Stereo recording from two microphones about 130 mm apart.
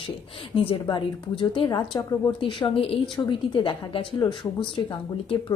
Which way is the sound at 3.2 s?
35° left (ahead or behind).